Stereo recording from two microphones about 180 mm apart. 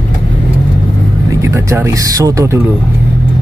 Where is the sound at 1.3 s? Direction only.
15° right (ahead or behind).